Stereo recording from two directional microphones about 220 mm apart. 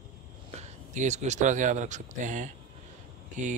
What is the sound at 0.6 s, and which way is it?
Speech, 30° right (ahead or behind).